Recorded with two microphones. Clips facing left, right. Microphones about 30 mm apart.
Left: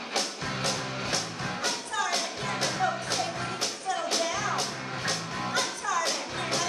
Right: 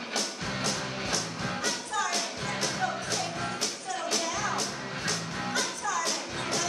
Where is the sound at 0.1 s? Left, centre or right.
Left.